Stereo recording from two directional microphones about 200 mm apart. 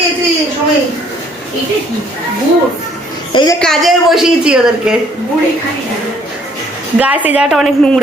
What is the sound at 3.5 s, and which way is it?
A woman's voice, centre (ahead or behind).